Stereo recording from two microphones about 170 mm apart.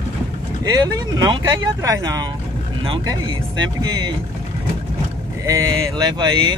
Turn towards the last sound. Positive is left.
turn(degrees=-25)  # may be behind; listen again after turning